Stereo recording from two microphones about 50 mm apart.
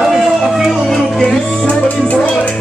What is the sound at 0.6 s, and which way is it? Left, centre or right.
Music, centre.